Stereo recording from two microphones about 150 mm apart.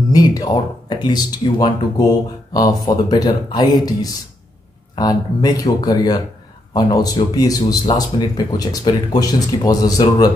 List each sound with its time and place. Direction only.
0.1 s speech: 25° left (ahead or behind)